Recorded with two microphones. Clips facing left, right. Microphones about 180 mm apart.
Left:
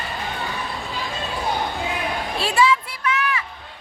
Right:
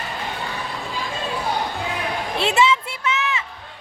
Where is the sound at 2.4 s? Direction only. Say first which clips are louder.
Right 1 dB; 25° right (ahead or behind).